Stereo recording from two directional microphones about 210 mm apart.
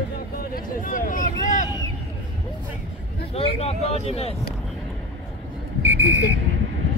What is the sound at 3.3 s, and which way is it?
Speech, 30° left (ahead or behind).